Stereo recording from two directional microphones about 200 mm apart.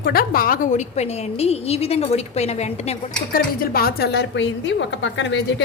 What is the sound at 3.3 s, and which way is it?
A woman's voice, 45° left (ahead or behind).